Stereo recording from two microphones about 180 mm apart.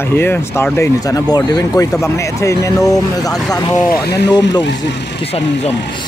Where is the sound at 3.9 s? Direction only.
65° left (ahead or behind).